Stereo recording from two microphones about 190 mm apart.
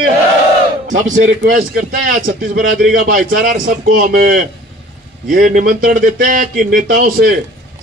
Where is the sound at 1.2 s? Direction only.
50° right (ahead or behind).